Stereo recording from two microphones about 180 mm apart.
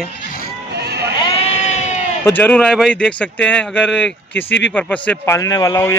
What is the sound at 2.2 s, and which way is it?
Speech, 10° left (ahead or behind).